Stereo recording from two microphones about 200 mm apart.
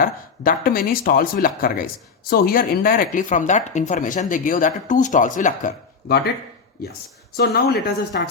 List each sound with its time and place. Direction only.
0.0 s speech: 45° left (ahead or behind)
7.3 s speech: 55° left (ahead or behind)